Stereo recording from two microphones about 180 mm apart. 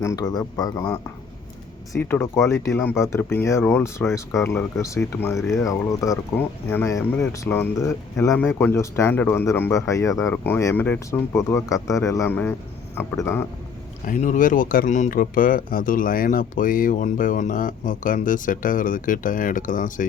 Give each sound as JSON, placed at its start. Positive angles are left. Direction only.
{"t": 0.0, "sound": "speech", "side_deg": 20}
{"t": 1.9, "sound": "speech", "side_deg": 10}
{"t": 14.0, "sound": "speech", "side_deg": 45}